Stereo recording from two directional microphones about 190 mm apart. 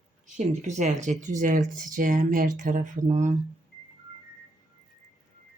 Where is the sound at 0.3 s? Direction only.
40° right (ahead or behind).